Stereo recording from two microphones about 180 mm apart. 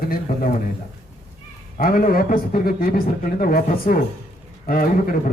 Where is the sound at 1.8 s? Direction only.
50° left (ahead or behind).